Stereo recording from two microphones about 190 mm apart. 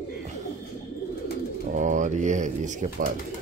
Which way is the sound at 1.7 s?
40° right (ahead or behind).